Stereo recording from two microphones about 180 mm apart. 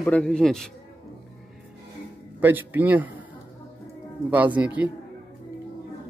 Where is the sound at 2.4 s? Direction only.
10° right (ahead or behind).